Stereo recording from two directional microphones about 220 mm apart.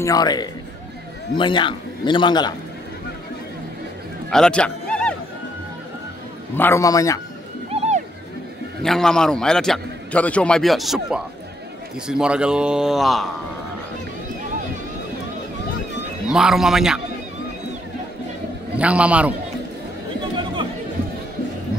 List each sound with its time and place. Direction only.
0.0 s a man's voice: 15° left (ahead or behind)
4.3 s neigh: 5° left (ahead or behind)
6.5 s a man's voice: 10° left (ahead or behind)
7.7 s a sound: 30° right (ahead or behind)
8.8 s a man's voice: centre (ahead or behind)
16.3 s a man's voice: centre (ahead or behind)
18.8 s a man's voice: 5° right (ahead or behind)